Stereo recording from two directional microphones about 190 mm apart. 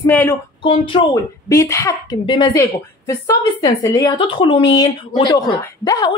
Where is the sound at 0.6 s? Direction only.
25° left (ahead or behind).